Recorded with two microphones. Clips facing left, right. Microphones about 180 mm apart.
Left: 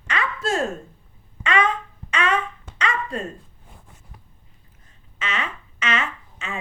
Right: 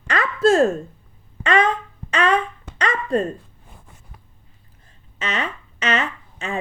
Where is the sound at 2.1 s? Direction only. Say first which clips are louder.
Right 4 dB; 35° right (ahead or behind).